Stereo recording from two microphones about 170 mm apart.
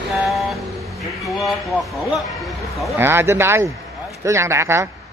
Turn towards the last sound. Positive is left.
turn(degrees=-15)  # may be behind; listen again after turning